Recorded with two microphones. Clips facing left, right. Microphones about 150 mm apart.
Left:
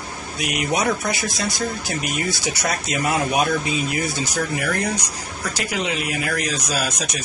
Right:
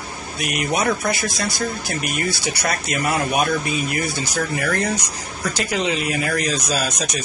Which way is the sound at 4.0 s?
15° left (ahead or behind).